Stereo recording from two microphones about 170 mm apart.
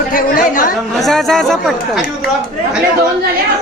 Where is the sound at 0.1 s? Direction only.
55° left (ahead or behind).